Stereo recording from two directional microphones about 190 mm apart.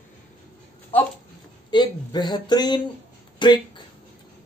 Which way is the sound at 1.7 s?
20° left (ahead or behind).